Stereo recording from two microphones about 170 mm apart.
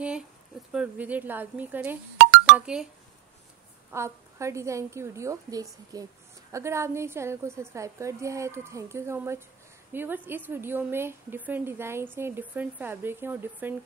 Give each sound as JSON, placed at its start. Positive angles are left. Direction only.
{"t": 0.7, "sound": "a woman's voice", "side_deg": -10}
{"t": 2.1, "sound": "a sound", "side_deg": -65}
{"t": 2.5, "sound": "speech", "side_deg": -5}
{"t": 3.9, "sound": "a woman's voice", "side_deg": -15}